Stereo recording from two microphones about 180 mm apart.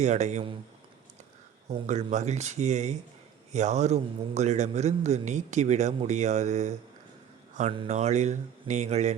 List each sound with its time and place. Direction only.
0.0 s a man's voice: 40° right (ahead or behind)
1.7 s a man's voice: 40° right (ahead or behind)